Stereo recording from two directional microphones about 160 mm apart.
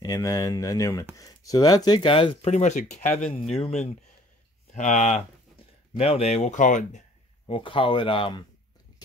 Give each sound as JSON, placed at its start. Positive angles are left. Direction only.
{"t": 0.0, "sound": "speech", "side_deg": 20}
{"t": 3.1, "sound": "speech", "side_deg": 5}
{"t": 3.5, "sound": "speech", "side_deg": 40}
{"t": 7.4, "sound": "speech", "side_deg": 35}